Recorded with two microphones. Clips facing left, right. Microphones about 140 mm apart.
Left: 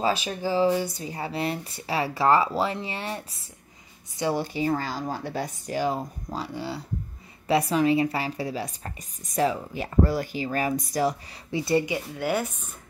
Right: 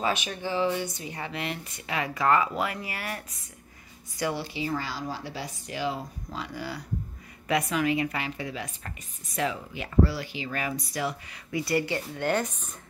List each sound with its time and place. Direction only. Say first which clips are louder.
0.0 s speech: left 3 dB; 30° left (ahead or behind)
4.3 s speech: left 7 dB; 45° left (ahead or behind)
6.5 s speech: left 2 dB; 25° left (ahead or behind)
11.5 s speech: left 3 dB; 25° left (ahead or behind)
11.9 s speech: left 1 dB; 5° left (ahead or behind)